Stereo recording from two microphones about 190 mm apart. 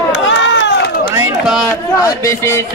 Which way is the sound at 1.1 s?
5° right (ahead or behind).